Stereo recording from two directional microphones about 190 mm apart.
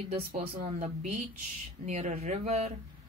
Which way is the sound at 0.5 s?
45° right (ahead or behind).